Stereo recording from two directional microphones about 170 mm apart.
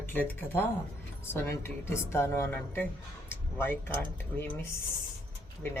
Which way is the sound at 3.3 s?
15° left (ahead or behind).